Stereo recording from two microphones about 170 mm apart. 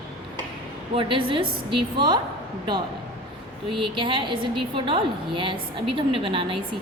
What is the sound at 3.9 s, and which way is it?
A woman's voice, 30° right (ahead or behind).